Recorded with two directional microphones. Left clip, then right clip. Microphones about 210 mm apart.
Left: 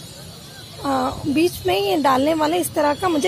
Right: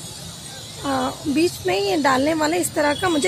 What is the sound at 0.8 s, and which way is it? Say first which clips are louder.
Speech: left 2 dB; 10° left (ahead or behind).